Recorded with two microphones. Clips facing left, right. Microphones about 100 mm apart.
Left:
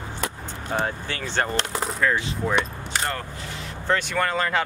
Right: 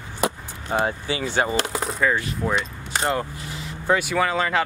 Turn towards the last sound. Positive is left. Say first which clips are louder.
# right 2 dB
turn(degrees=0)  # may be behind; listen again after turning